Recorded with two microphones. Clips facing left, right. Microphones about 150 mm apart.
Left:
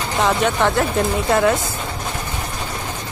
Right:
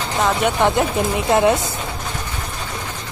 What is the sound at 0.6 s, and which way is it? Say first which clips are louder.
A woman's voice: right 1 dB; 15° right (ahead or behind).